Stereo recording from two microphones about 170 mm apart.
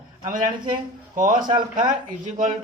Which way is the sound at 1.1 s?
50° right (ahead or behind).